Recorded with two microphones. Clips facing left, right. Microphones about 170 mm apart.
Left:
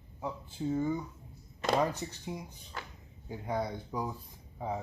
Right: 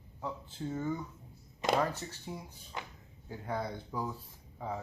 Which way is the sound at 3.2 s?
15° left (ahead or behind).